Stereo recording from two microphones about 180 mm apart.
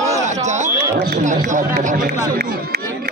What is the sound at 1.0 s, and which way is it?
Speech, 50° right (ahead or behind).